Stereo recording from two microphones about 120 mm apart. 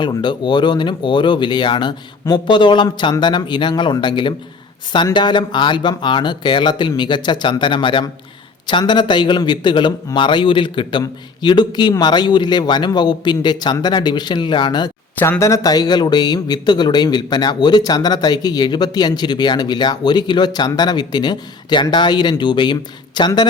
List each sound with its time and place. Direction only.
0.0 s a man's voice: 40° left (ahead or behind)
15.2 s a man's voice: 20° left (ahead or behind); by 23.5 s 40° left (ahead or behind)